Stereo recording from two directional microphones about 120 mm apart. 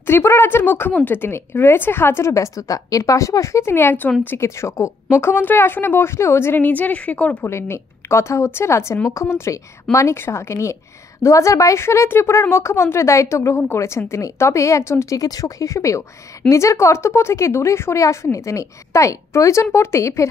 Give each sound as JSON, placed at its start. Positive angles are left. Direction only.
{"t": 0.0, "sound": "speech", "side_deg": 20}
{"t": 7.4, "sound": "speech", "side_deg": 20}